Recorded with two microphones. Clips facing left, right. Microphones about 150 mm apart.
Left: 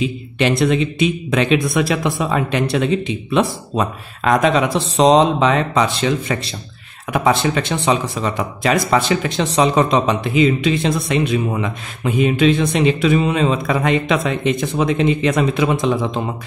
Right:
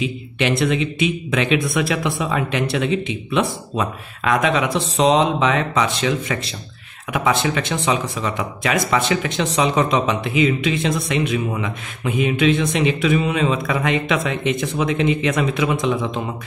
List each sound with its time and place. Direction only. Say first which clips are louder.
0.0 s speech: left 3 dB; 40° left (ahead or behind)